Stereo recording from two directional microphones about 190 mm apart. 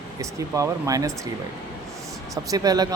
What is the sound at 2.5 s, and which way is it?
Speech, 20° right (ahead or behind).